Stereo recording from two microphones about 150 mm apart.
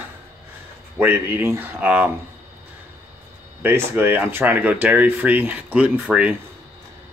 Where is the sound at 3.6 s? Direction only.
15° right (ahead or behind).